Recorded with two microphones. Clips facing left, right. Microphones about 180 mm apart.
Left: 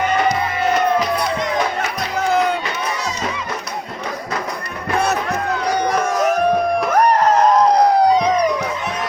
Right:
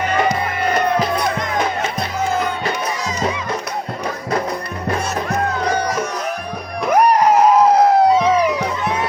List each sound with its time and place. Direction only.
6.1 s music: 45° left (ahead or behind)
6.9 s music: 10° right (ahead or behind)
8.8 s music: 60° right (ahead or behind)